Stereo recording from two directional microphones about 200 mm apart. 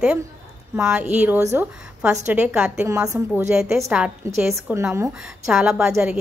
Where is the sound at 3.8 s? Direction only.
5° right (ahead or behind).